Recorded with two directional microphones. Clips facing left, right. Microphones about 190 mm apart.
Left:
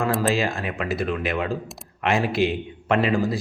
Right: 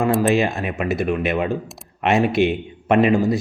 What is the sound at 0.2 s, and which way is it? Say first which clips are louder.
Speech: right 5 dB; 20° right (ahead or behind).